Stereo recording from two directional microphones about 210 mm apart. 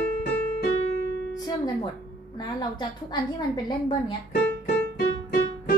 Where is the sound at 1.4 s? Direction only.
20° left (ahead or behind).